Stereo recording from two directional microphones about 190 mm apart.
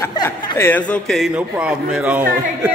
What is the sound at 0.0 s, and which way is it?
Chuckle, 20° left (ahead or behind).